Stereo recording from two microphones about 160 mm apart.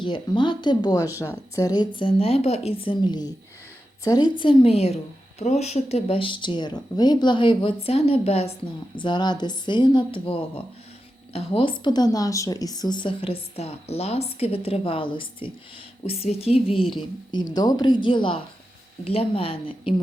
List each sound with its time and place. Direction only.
0.0 s speech: 30° left (ahead or behind)